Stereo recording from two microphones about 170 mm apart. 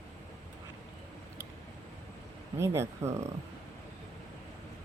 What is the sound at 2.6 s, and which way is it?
Speech, 15° right (ahead or behind).